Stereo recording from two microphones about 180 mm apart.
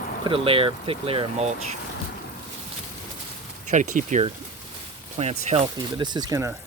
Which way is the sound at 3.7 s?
45° right (ahead or behind).